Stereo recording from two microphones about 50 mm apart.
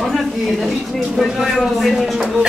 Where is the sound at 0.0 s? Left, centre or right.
Centre.